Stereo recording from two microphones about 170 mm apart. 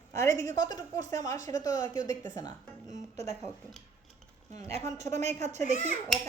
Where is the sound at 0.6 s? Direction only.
20° left (ahead or behind).